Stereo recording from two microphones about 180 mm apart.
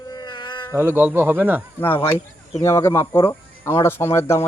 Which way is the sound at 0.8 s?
10° right (ahead or behind).